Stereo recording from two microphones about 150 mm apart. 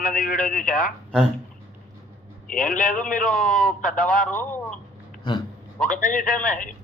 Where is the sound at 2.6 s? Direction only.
65° left (ahead or behind).